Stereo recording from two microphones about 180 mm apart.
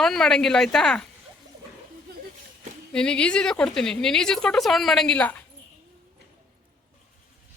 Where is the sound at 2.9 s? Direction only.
5° left (ahead or behind).